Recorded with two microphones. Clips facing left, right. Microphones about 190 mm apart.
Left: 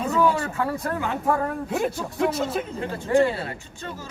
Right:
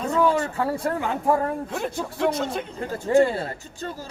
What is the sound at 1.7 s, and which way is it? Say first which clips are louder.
Speech: left 3 dB; 5° left (ahead or behind).